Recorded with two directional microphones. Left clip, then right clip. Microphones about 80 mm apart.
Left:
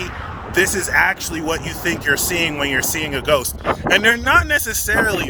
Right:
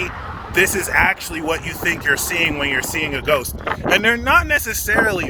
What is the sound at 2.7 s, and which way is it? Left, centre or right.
Speech, left.